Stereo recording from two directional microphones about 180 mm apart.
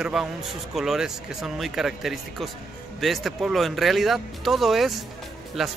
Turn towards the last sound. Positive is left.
turn(degrees=0)  # may be behind; listen again after turning